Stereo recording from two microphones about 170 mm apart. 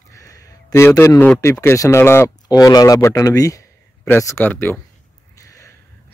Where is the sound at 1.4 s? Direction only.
15° left (ahead or behind).